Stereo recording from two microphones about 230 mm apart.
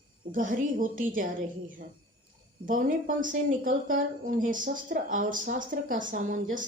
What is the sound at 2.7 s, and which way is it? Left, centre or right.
A woman's voice, right.